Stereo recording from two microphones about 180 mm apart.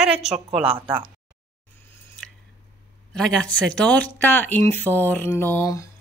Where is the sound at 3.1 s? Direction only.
5° left (ahead or behind).